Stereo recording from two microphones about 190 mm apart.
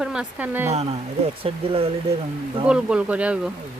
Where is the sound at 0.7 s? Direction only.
35° right (ahead or behind).